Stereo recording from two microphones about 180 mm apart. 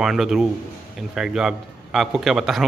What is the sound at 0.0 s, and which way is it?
A man's voice, centre (ahead or behind).